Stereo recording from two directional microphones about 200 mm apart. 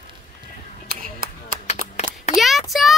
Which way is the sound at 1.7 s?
35° left (ahead or behind).